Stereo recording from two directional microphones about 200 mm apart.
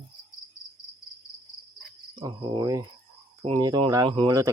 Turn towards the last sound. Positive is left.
turn(degrees=-20)  # may be behind; listen again after turning